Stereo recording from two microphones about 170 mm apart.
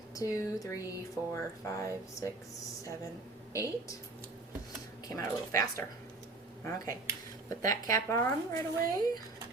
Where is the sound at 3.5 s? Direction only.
20° left (ahead or behind).